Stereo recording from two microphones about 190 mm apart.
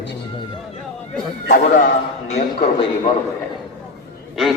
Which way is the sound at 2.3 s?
35° left (ahead or behind).